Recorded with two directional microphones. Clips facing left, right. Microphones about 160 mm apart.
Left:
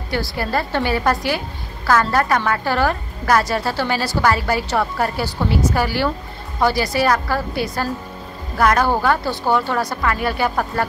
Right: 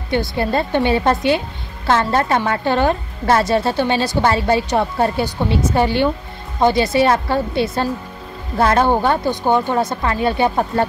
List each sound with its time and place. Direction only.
0.1 s a woman's voice: 20° right (ahead or behind)